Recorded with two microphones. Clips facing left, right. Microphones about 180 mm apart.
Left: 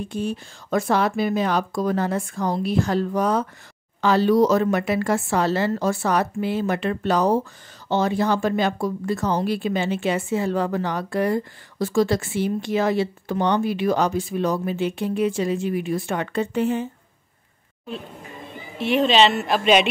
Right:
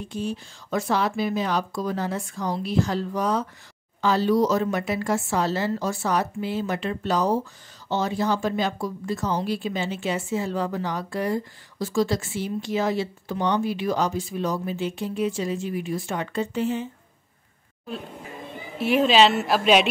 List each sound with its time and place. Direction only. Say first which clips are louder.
0.1 s speech: left 3 dB; 55° left (ahead or behind)
4.0 s speech: left 3 dB; 65° left (ahead or behind)
18.8 s a woman's voice: even; 5° right (ahead or behind)